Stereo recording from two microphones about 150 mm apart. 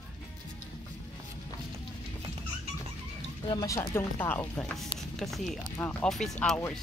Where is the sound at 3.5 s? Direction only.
25° left (ahead or behind).